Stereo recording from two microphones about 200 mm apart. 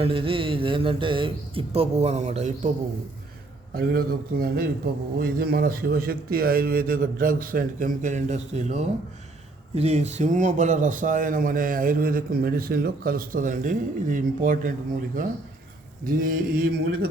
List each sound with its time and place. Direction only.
0.0 s speech: 25° right (ahead or behind)
3.8 s a man's voice: 50° right (ahead or behind)
16.6 s a man's voice: 55° right (ahead or behind)